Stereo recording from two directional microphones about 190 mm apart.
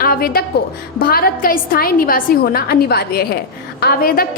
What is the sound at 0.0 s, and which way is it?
A woman's voice, 50° left (ahead or behind).